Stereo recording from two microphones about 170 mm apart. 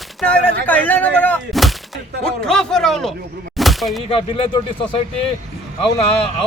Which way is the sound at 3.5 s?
Centre (ahead or behind).